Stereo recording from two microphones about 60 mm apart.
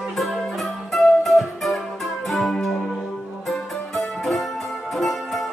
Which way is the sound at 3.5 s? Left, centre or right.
Centre.